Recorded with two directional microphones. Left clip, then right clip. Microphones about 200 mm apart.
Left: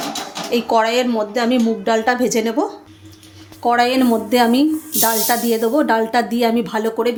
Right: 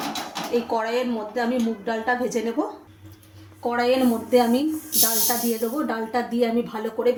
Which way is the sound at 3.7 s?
50° left (ahead or behind).